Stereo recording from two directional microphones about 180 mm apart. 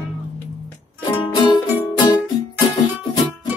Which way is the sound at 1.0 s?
25° left (ahead or behind).